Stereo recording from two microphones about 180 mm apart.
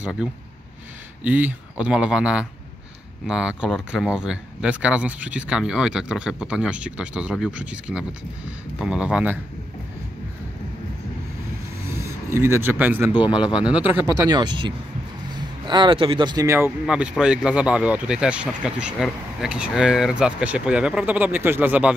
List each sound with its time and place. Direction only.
0.0 s speech: 5° right (ahead or behind)
11.9 s speech: 15° right (ahead or behind)
13.1 s a man's voice: 25° left (ahead or behind)
13.7 s speech: 5° right (ahead or behind)
14.2 s speech: 25° right (ahead or behind)
16.8 s speech: 5° right (ahead or behind)